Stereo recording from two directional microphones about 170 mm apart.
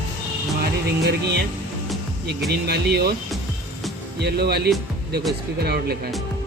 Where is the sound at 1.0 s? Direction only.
75° right (ahead or behind).